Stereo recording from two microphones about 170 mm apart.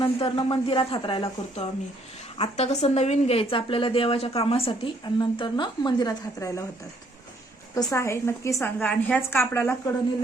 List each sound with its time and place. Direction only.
0.0 s a woman's voice: 30° left (ahead or behind)
7.8 s a woman's voice: 20° left (ahead or behind)